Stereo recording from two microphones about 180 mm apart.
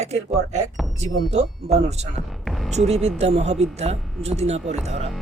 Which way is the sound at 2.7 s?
35° right (ahead or behind).